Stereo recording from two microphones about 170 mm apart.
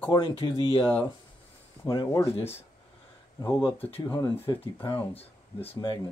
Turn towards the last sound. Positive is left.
turn(degrees=35)  # may be behind; listen again after turning